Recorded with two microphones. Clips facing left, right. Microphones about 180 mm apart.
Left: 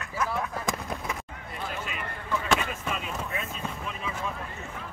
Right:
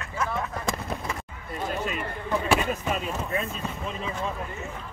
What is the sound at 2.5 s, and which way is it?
Speech, 40° right (ahead or behind).